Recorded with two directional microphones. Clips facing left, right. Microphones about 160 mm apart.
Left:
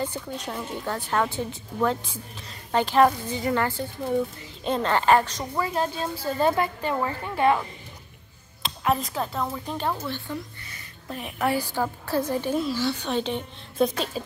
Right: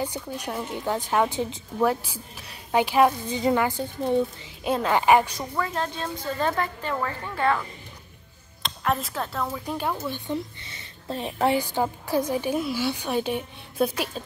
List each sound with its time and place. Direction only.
0.0 s a woman's voice: 10° right (ahead or behind)
3.3 s a woman's voice: 20° right (ahead or behind)
4.6 s a woman's voice: 5° right (ahead or behind)
5.4 s a woman's voice: 10° left (ahead or behind)
8.6 s speech: 5° left (ahead or behind)
9.7 s a woman's voice: 10° right (ahead or behind)